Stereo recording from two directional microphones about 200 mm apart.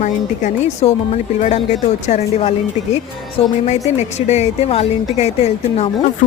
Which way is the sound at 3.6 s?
35° left (ahead or behind).